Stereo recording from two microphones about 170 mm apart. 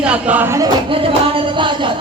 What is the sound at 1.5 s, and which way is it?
Speech, 30° right (ahead or behind).